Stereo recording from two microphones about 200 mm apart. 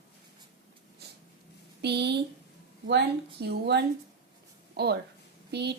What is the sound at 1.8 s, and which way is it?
Speech, 55° right (ahead or behind).